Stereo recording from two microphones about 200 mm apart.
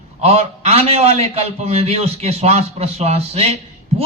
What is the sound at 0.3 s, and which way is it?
A man's voice, 30° right (ahead or behind).